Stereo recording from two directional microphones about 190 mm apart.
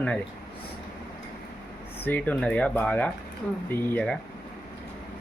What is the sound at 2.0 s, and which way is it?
Speech, 10° left (ahead or behind).